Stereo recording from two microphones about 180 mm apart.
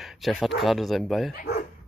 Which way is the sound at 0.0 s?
Centre (ahead or behind).